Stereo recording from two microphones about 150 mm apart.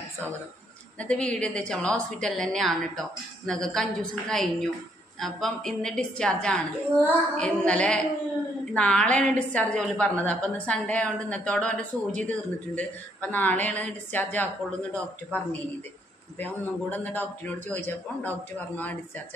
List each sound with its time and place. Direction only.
0.9 s a woman's voice: 5° left (ahead or behind)